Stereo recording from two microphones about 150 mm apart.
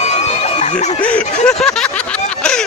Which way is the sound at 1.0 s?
5° left (ahead or behind).